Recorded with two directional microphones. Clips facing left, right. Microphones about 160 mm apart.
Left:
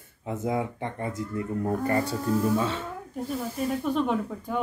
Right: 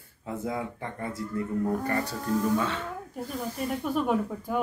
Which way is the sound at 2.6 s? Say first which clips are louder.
Left 2 dB; 25° left (ahead or behind).